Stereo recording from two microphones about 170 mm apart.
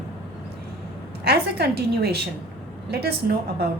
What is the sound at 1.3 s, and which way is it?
A woman's voice, 70° right (ahead or behind).